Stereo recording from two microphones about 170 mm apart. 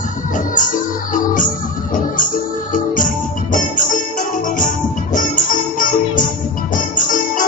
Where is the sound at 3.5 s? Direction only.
50° left (ahead or behind).